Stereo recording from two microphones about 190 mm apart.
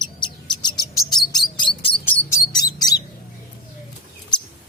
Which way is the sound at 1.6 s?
25° left (ahead or behind).